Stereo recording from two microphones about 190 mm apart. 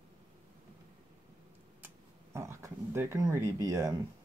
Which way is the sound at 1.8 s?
15° right (ahead or behind).